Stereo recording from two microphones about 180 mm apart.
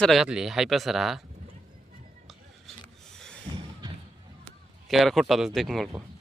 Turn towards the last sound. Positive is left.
turn(degrees=0)  # may be behind; listen again after turning